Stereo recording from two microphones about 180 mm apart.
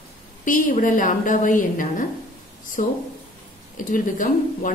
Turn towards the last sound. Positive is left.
turn(degrees=45)  # may be behind; listen again after turning